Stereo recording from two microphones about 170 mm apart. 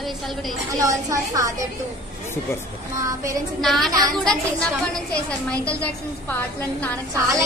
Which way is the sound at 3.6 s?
Centre (ahead or behind).